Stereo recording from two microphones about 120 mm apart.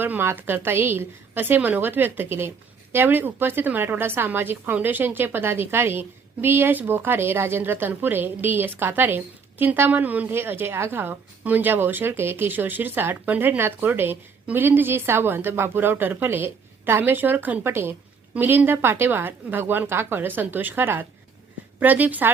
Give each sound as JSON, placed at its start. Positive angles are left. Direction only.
{"t": 0.0, "sound": "a woman's voice", "side_deg": -20}